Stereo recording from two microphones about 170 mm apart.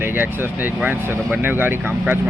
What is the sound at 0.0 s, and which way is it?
Speech, 10° right (ahead or behind).